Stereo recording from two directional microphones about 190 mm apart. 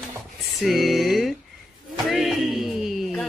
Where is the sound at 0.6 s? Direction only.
Centre (ahead or behind).